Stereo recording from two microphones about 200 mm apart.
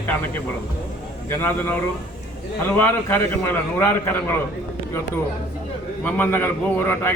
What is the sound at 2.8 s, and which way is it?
A man's voice, 10° left (ahead or behind).